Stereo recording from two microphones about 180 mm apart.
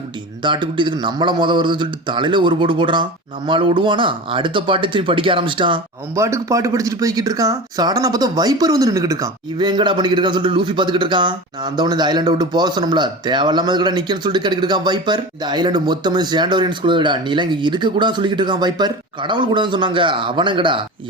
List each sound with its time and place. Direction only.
0.4 s speech: 25° right (ahead or behind)
6.1 s speech: 15° right (ahead or behind)